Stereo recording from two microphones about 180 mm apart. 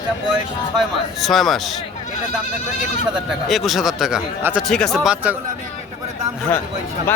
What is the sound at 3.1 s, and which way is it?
Speech, centre (ahead or behind).